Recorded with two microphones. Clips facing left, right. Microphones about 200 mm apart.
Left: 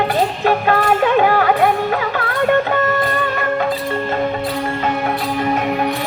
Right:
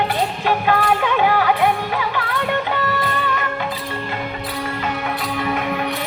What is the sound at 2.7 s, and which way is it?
Music, 45° left (ahead or behind).